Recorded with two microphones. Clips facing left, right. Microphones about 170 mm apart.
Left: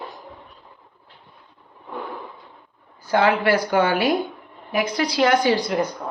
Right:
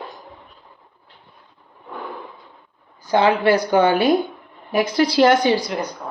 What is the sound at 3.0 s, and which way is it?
Speech, 20° right (ahead or behind).